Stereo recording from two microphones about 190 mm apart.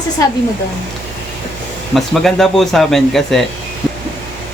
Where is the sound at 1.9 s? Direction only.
Centre (ahead or behind).